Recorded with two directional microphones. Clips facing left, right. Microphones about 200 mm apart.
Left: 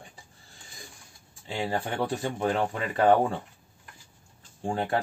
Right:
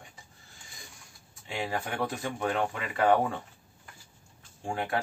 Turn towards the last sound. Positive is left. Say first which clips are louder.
# left 4 dB
turn(degrees=35)  # may be behind; listen again after turning